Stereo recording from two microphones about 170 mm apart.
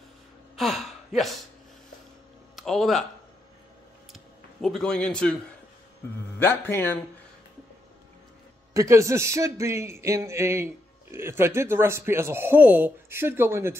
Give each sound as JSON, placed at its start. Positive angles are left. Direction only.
{"t": 0.6, "sound": "gasp", "side_deg": 0}
{"t": 2.5, "sound": "speech", "side_deg": 0}
{"t": 4.1, "sound": "a sound", "side_deg": 0}
{"t": 6.4, "sound": "speech", "side_deg": 15}
{"t": 8.7, "sound": "a man's voice", "side_deg": -15}